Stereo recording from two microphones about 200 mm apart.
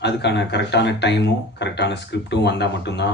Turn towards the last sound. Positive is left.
turn(degrees=60)  # may be behind; listen again after turning